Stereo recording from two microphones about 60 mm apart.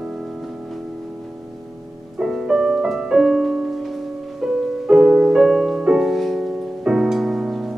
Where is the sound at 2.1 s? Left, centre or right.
Centre.